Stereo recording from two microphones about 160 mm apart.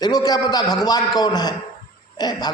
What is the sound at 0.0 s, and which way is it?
A man's voice, 25° left (ahead or behind).